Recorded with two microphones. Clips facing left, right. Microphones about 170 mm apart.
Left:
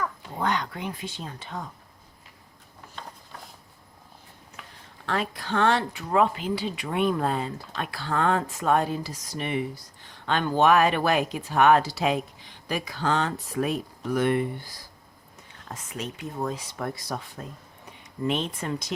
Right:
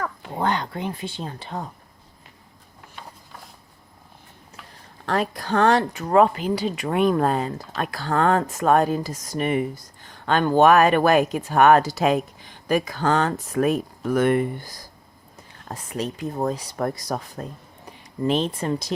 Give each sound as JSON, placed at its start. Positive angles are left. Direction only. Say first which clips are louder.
{"t": 0.4, "sound": "speech", "louder": "right 3 dB", "side_deg": -30}
{"t": 5.0, "sound": "speech", "louder": "right 5 dB", "side_deg": -40}
{"t": 16.0, "sound": "speech", "louder": "right 6 dB", "side_deg": -35}